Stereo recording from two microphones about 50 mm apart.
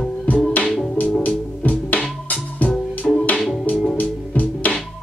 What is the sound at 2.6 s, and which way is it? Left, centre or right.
Music, left.